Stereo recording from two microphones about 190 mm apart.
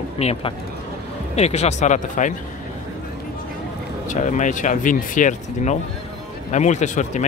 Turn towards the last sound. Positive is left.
turn(degrees=40)  # may be behind; listen again after turning